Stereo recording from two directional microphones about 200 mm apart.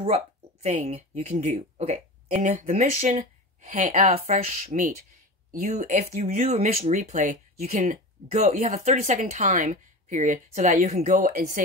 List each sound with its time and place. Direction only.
0.0 s speech: 35° right (ahead or behind)